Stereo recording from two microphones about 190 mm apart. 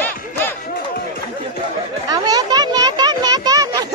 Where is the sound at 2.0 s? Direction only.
20° right (ahead or behind).